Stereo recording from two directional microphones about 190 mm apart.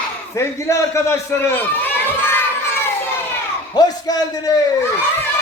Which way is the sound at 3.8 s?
20° left (ahead or behind).